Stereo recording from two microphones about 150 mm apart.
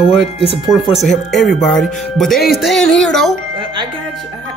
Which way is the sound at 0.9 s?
Centre (ahead or behind).